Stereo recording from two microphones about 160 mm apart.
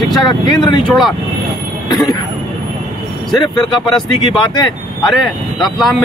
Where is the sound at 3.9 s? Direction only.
25° left (ahead or behind).